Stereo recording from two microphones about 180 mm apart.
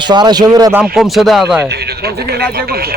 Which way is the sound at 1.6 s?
65° right (ahead or behind).